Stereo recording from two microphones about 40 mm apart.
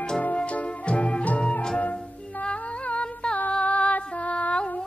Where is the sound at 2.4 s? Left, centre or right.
Left.